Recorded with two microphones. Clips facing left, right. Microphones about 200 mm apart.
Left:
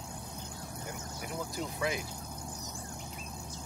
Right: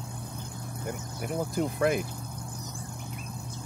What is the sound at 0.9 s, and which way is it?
Speech, 55° right (ahead or behind).